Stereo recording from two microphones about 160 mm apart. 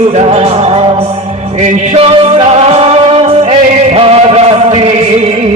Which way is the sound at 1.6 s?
50° right (ahead or behind).